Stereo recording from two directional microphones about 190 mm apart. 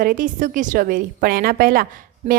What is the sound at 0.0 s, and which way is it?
A woman's voice, 45° right (ahead or behind).